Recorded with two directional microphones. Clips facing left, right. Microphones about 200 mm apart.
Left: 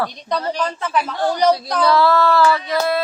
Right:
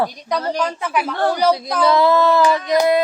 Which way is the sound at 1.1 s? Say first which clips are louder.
Right 4 dB; 60° right (ahead or behind).